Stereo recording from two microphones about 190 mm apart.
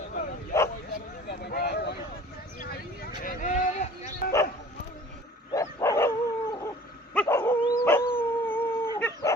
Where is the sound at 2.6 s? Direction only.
50° left (ahead or behind).